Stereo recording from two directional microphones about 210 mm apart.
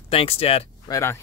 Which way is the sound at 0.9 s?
10° left (ahead or behind).